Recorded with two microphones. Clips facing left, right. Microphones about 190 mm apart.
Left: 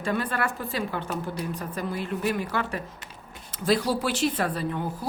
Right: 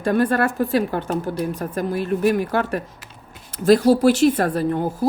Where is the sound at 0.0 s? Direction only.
50° right (ahead or behind).